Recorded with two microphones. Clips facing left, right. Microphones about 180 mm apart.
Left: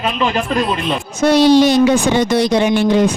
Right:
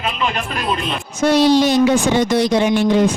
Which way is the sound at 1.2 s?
70° left (ahead or behind).